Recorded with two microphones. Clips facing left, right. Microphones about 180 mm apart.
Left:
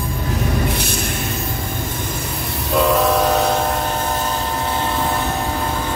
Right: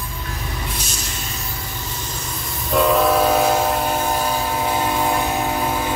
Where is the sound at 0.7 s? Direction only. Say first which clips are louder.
Left 8 dB; 60° left (ahead or behind).